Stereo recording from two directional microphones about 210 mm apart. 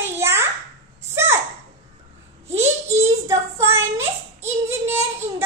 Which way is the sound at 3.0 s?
15° right (ahead or behind).